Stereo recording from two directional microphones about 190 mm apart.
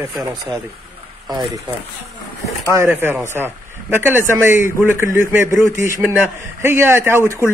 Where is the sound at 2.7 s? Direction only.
10° right (ahead or behind).